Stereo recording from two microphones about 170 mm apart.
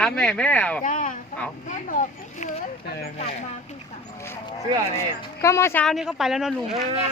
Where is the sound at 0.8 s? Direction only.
50° left (ahead or behind).